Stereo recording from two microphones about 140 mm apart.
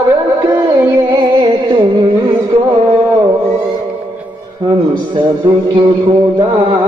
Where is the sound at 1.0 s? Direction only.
30° right (ahead or behind).